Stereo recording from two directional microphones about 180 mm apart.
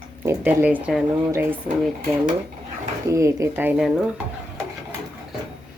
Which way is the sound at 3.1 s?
15° right (ahead or behind).